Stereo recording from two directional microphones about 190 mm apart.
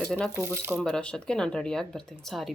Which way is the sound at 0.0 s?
5° left (ahead or behind).